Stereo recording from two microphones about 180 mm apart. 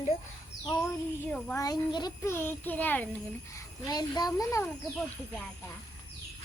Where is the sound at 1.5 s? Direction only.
20° left (ahead or behind).